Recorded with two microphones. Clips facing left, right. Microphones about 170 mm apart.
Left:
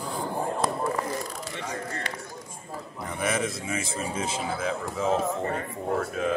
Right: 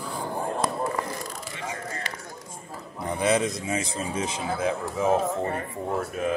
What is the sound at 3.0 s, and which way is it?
A man's voice, 20° right (ahead or behind).